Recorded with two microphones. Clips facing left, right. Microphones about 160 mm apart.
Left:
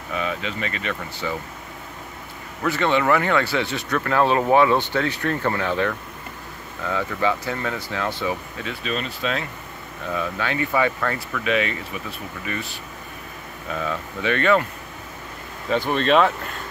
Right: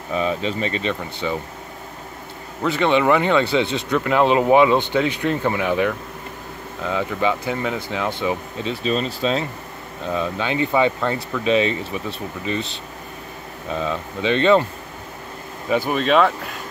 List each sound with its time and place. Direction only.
0.1 s speech: 30° right (ahead or behind)
2.6 s speech: 20° right (ahead or behind)
8.8 s speech: 30° right (ahead or behind)
15.7 s speech: 10° right (ahead or behind)